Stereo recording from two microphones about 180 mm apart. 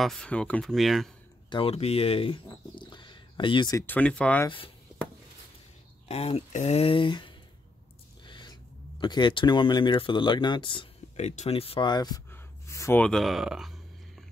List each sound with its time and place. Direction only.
0.0 s speech: 5° left (ahead or behind)
1.5 s speech: 30° left (ahead or behind)
3.8 s speech: 10° left (ahead or behind)
4.5 s speech: 30° left (ahead or behind)
6.0 s speech: 35° left (ahead or behind)
8.3 s a sound: 25° left (ahead or behind)
9.0 s speech: 25° left (ahead or behind); by 13.7 s centre (ahead or behind)